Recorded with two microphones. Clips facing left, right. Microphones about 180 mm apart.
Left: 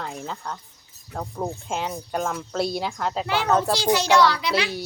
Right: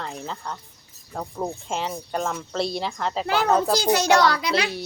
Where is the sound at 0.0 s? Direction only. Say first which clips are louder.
Even; centre (ahead or behind).